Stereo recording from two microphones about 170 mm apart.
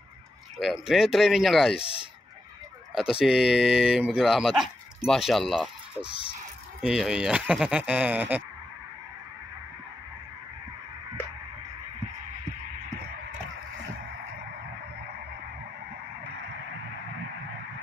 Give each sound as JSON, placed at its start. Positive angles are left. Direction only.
{"t": 0.6, "sound": "speech", "side_deg": 0}
{"t": 1.8, "sound": "speech", "side_deg": 35}
{"t": 3.2, "sound": "speech", "side_deg": -5}